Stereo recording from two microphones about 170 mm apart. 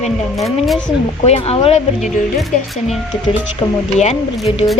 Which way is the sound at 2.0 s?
Centre (ahead or behind).